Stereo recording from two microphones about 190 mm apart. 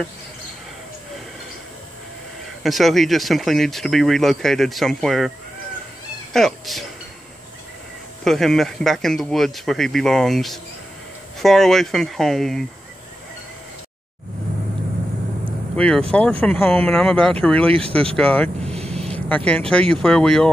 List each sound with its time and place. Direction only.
2.6 s speech: centre (ahead or behind)
6.3 s speech: centre (ahead or behind)
8.2 s speech: centre (ahead or behind)
15.7 s speech: 5° left (ahead or behind)